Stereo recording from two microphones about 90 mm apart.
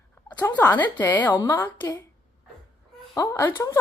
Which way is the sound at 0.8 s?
20° left (ahead or behind).